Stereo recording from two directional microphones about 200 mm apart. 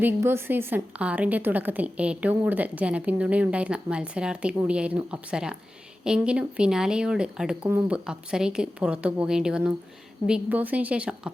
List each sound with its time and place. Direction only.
0.0 s a woman's voice: 10° right (ahead or behind)